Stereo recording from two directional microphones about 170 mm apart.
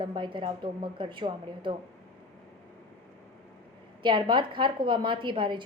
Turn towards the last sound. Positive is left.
turn(degrees=-30)  # may be behind; listen again after turning